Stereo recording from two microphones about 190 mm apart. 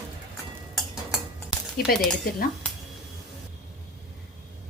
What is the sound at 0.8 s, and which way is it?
Dishes, 5° right (ahead or behind).